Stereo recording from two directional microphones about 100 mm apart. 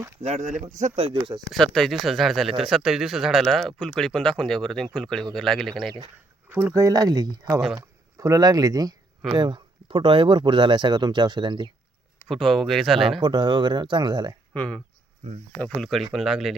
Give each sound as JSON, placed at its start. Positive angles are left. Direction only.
{"t": 0.6, "sound": "speech", "side_deg": -90}
{"t": 1.1, "sound": "speech", "side_deg": -50}
{"t": 1.5, "sound": "speech", "side_deg": 5}
{"t": 6.5, "sound": "speech", "side_deg": -20}
{"t": 6.7, "sound": "speech", "side_deg": -35}
{"t": 9.4, "sound": "speech", "side_deg": -50}
{"t": 12.3, "sound": "speech", "side_deg": 0}
{"t": 13.1, "sound": "speech", "side_deg": -50}
{"t": 14.5, "sound": "speech", "side_deg": 15}